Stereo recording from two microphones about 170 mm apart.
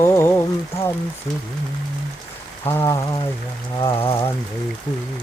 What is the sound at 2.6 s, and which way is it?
Rain on surface, 15° left (ahead or behind).